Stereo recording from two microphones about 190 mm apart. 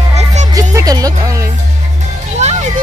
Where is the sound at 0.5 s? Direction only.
20° right (ahead or behind).